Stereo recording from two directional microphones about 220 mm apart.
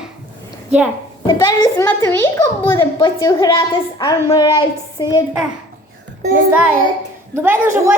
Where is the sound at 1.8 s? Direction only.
10° left (ahead or behind).